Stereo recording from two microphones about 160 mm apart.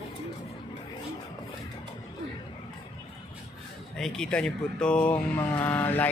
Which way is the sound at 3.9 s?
5° left (ahead or behind).